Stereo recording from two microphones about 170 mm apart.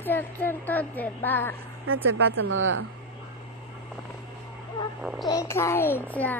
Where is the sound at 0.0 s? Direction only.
10° left (ahead or behind).